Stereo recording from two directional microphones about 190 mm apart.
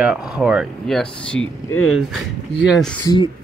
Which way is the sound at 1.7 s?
90° left.